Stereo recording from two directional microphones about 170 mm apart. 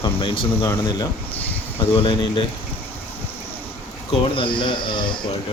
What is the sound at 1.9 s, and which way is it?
Speech, 30° left (ahead or behind).